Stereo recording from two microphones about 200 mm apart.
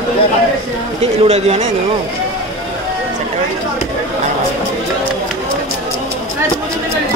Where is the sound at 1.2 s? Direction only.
30° right (ahead or behind).